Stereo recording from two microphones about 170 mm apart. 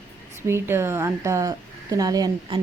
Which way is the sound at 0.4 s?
15° right (ahead or behind).